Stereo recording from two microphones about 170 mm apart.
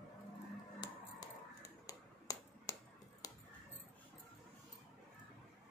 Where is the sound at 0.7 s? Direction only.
20° left (ahead or behind).